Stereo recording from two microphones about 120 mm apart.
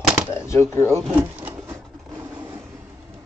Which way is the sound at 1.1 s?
10° right (ahead or behind).